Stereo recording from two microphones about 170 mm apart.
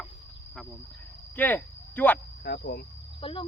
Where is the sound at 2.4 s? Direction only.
70° left (ahead or behind).